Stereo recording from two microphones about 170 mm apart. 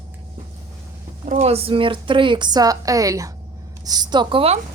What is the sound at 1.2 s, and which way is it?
A woman's voice, 45° right (ahead or behind).